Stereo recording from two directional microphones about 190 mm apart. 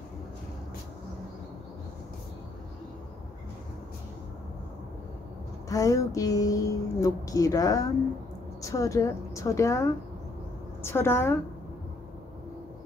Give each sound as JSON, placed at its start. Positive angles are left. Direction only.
{"t": 5.7, "sound": "a woman's voice", "side_deg": 15}